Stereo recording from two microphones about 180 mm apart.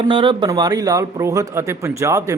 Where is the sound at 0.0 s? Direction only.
25° right (ahead or behind).